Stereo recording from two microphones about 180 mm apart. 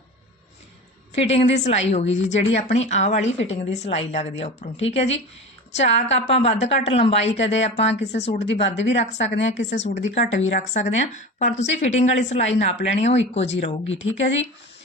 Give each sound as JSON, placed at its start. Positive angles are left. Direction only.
{"t": 1.1, "sound": "a woman's voice", "side_deg": 35}
{"t": 7.3, "sound": "speech", "side_deg": 90}
{"t": 7.6, "sound": "a woman's voice", "side_deg": 35}
{"t": 8.6, "sound": "a woman's voice", "side_deg": 85}
{"t": 9.0, "sound": "a woman's voice", "side_deg": 35}
{"t": 9.3, "sound": "a woman's voice", "side_deg": 85}
{"t": 9.7, "sound": "a woman's voice", "side_deg": 40}
{"t": 10.1, "sound": "speech", "side_deg": 90}
{"t": 10.6, "sound": "a woman's voice", "side_deg": 40}
{"t": 13.8, "sound": "speech", "side_deg": 90}